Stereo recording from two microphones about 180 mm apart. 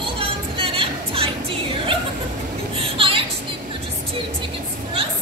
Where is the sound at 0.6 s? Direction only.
30° right (ahead or behind).